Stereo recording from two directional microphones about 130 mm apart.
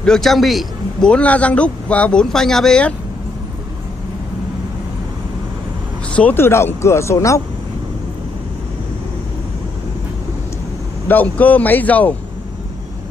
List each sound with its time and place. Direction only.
0.0 s a man's voice: 5° left (ahead or behind)
6.1 s speech: 15° left (ahead or behind)
11.1 s a man's voice: 15° left (ahead or behind)